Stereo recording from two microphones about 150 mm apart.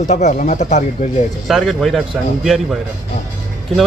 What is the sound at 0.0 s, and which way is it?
Speech, 55° left (ahead or behind).